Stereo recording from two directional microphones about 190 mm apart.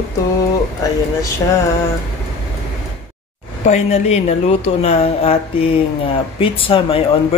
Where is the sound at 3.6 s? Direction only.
35° left (ahead or behind).